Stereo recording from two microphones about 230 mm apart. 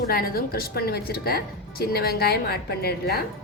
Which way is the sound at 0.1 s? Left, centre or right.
Left.